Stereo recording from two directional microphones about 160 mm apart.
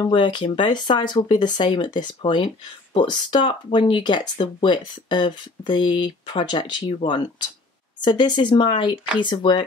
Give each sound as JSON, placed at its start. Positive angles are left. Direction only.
{"t": 0.0, "sound": "speech", "side_deg": 30}